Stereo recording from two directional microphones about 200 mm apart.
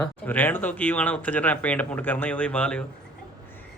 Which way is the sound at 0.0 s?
10° left (ahead or behind).